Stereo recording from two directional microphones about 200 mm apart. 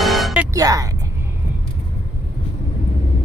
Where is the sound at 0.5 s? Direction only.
15° right (ahead or behind).